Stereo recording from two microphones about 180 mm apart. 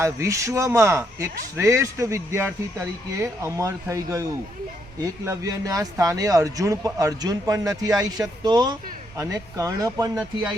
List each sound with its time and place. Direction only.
0.0 s a man's voice: 15° right (ahead or behind)